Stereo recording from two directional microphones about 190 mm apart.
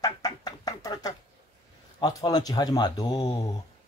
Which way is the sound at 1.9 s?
20° left (ahead or behind).